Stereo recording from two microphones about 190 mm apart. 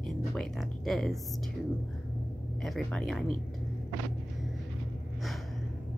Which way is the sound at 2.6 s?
Centre (ahead or behind).